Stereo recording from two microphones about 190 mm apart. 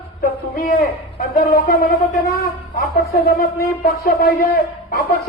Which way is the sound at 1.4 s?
50° left (ahead or behind).